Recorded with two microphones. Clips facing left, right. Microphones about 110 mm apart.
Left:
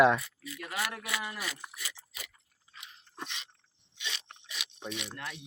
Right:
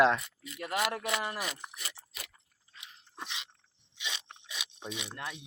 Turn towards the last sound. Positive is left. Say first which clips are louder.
# even
turn(degrees=-20)  # may be behind; listen again after turning